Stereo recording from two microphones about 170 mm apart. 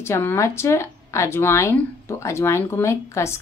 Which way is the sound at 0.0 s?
15° left (ahead or behind).